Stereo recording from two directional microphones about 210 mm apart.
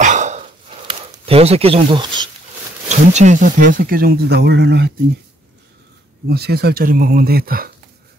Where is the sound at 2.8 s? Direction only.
35° right (ahead or behind); by 4.9 s 55° right (ahead or behind).